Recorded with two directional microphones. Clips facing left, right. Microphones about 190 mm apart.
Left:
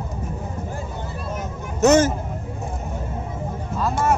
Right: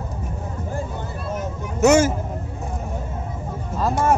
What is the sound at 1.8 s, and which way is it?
Speech, 10° right (ahead or behind).